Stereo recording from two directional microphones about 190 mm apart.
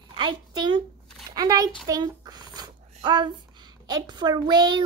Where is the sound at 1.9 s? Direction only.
20° right (ahead or behind).